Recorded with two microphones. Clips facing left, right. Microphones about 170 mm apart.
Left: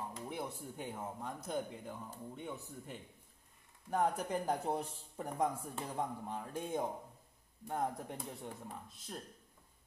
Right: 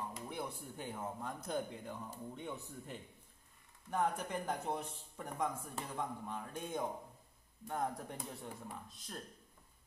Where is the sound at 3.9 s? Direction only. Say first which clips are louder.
Left 2 dB; 35° left (ahead or behind).